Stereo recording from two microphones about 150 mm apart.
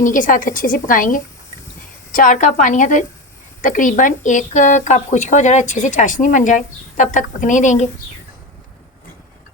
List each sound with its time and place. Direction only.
0.0 s speech: 60° left (ahead or behind)